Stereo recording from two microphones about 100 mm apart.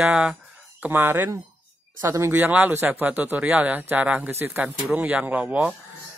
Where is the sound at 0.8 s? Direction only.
20° right (ahead or behind).